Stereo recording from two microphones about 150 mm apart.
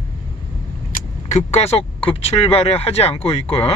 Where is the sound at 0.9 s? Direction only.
50° left (ahead or behind).